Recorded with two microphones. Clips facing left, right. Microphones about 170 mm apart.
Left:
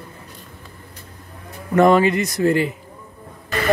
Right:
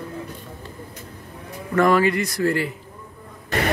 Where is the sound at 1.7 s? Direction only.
20° left (ahead or behind).